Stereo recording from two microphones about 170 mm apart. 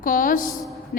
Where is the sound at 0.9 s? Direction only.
65° left (ahead or behind).